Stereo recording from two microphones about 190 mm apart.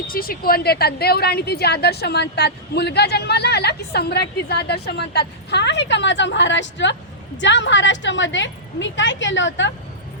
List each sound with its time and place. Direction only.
0.1 s a woman's voice: 50° left (ahead or behind); by 9.7 s 75° left (ahead or behind)